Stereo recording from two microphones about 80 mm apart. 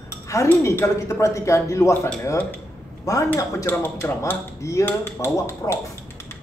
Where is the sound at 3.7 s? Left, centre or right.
Left.